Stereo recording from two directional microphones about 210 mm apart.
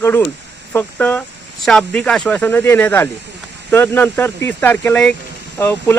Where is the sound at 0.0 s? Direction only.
10° left (ahead or behind).